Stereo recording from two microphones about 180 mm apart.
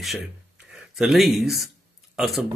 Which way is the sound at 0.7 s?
Centre (ahead or behind).